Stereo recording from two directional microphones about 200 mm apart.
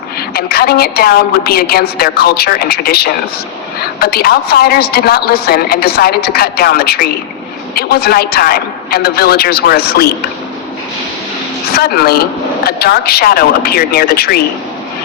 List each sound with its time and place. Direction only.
0.3 s a woman's voice: 50° left (ahead or behind)
11.7 s a woman's voice: 50° left (ahead or behind)